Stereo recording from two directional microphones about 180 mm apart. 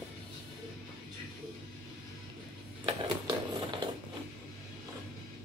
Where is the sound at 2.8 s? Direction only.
25° right (ahead or behind).